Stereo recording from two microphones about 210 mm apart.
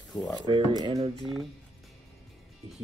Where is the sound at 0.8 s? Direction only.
25° right (ahead or behind).